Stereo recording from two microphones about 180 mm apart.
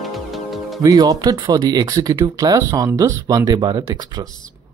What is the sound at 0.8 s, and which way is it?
Speech, 20° right (ahead or behind).